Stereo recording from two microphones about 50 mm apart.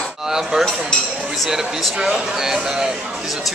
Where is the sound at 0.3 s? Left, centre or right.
Centre.